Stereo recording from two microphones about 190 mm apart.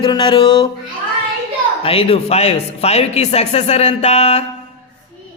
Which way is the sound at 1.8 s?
30° left (ahead or behind).